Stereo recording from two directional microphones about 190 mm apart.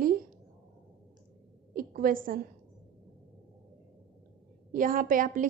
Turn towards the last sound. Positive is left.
turn(degrees=-45)  # may be behind; listen again after turning